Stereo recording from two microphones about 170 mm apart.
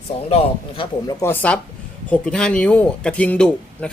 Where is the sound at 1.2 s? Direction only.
10° left (ahead or behind).